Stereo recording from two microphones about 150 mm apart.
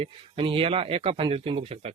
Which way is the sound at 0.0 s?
35° right (ahead or behind).